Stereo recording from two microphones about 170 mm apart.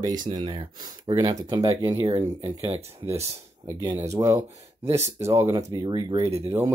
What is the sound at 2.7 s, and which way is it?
Speech, 40° right (ahead or behind).